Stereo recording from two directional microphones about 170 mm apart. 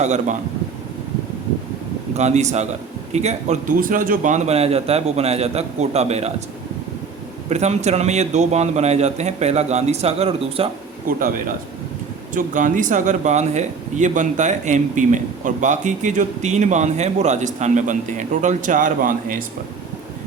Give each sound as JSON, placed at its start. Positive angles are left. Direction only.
{"t": 0.0, "sound": "speech", "side_deg": -45}
{"t": 2.1, "sound": "a man's voice", "side_deg": -40}
{"t": 7.5, "sound": "a man's voice", "side_deg": -40}
{"t": 12.3, "sound": "speech", "side_deg": -50}